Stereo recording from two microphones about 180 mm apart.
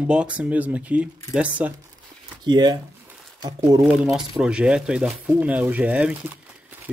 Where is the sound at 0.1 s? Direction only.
5° right (ahead or behind).